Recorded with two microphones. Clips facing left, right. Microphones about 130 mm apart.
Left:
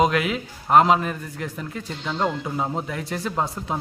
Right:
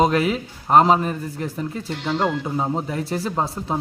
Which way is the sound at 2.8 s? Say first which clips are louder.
Right 4 dB; 30° right (ahead or behind).